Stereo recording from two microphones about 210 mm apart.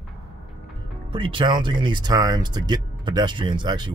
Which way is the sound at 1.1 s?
25° right (ahead or behind).